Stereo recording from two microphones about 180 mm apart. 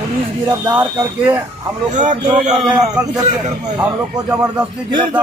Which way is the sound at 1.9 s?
45° right (ahead or behind).